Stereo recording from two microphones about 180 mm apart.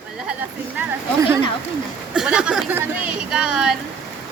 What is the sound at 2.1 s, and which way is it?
Speech, 5° right (ahead or behind).